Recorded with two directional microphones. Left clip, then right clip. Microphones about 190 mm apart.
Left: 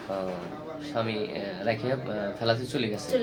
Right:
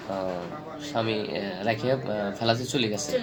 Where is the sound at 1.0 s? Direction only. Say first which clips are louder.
Right 2 dB; 25° right (ahead or behind).